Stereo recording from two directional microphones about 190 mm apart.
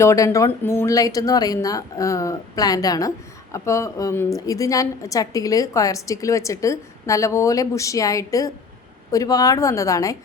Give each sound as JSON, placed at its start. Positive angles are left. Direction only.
{"t": 0.0, "sound": "a woman's voice", "side_deg": 15}